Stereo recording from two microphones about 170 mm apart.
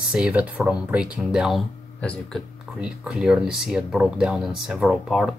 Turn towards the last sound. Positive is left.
turn(degrees=0)  # may be behind; listen again after turning